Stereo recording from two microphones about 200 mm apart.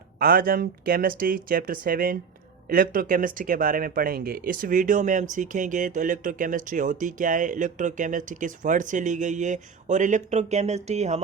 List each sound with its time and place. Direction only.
0.2 s speech: 45° right (ahead or behind)